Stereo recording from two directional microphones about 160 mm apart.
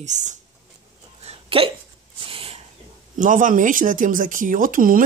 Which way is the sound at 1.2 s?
35° right (ahead or behind).